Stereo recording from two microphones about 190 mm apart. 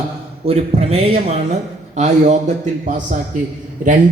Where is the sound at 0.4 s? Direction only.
30° right (ahead or behind).